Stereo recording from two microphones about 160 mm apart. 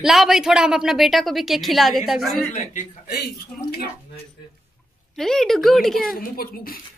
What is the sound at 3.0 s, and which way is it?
Speech, 75° left (ahead or behind).